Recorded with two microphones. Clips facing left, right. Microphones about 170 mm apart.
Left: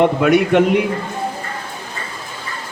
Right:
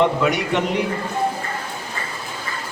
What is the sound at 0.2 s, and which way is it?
Speech, 55° left (ahead or behind).